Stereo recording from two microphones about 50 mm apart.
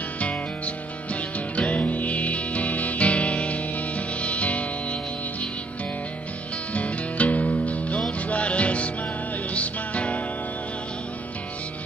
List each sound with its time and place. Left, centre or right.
1.6 s music: left
6.7 s music: left